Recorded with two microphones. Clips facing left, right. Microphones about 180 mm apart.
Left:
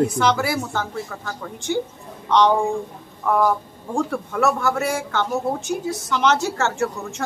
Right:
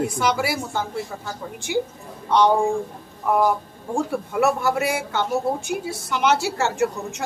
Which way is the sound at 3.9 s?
15° right (ahead or behind).